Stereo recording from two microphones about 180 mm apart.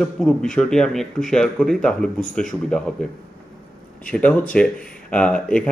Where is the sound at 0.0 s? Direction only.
5° left (ahead or behind).